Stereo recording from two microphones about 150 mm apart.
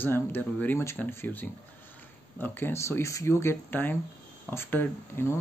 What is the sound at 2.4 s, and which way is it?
Speech, 15° left (ahead or behind).